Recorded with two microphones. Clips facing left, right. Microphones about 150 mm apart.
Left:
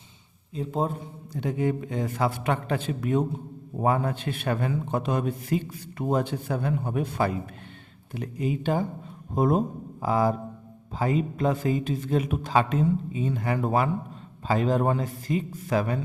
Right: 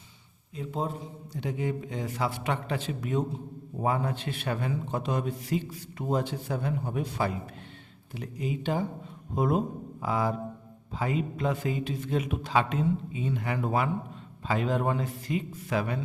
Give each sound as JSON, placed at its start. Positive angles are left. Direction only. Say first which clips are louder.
{"t": 0.6, "sound": "a man's voice", "louder": "left 5 dB", "side_deg": 30}
{"t": 1.3, "sound": "a man's voice", "louder": "left 5 dB", "side_deg": 50}